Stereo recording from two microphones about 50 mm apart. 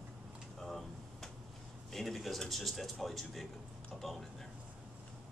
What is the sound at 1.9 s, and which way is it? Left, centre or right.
Speech, centre.